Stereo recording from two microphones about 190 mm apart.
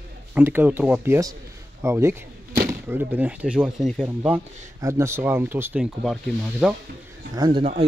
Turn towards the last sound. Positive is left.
turn(degrees=-30)  # may be behind; listen again after turning